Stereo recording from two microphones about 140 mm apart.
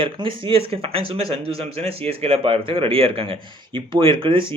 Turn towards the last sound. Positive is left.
turn(degrees=-35)  # may be behind; listen again after turning